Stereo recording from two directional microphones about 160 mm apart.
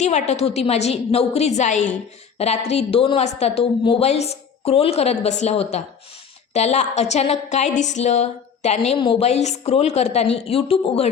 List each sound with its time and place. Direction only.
0.0 s a woman's voice: 45° left (ahead or behind)